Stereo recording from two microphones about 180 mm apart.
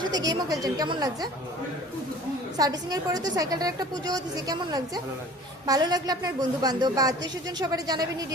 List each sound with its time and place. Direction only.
0.0 s a woman's voice: 20° right (ahead or behind)
2.6 s a woman's voice: 20° right (ahead or behind)